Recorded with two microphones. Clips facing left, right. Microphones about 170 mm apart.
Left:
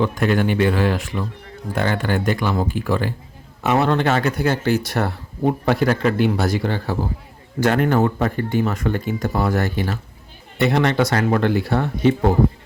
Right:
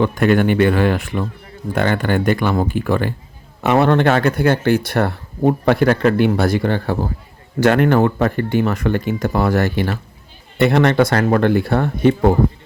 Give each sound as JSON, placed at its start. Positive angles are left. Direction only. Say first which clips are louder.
{"t": 0.0, "sound": "speech", "louder": "right 4 dB", "side_deg": -60}
{"t": 7.6, "sound": "speech", "louder": "right 4 dB", "side_deg": -70}
{"t": 10.6, "sound": "speech", "louder": "right 4 dB", "side_deg": -60}